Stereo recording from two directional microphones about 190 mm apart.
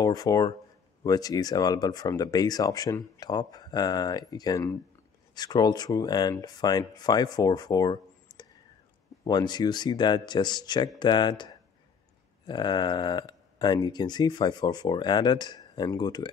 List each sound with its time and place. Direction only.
0.0 s speech: 20° left (ahead or behind)
12.4 s speech: 25° left (ahead or behind)